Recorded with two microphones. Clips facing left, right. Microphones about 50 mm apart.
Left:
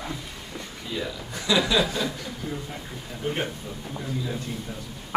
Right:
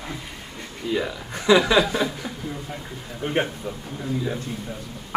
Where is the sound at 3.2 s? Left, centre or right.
Right.